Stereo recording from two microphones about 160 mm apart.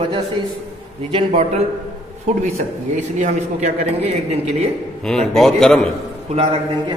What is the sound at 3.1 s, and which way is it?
Speech, 45° right (ahead or behind).